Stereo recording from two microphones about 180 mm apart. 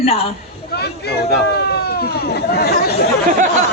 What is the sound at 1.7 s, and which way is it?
Chatter, 60° left (ahead or behind).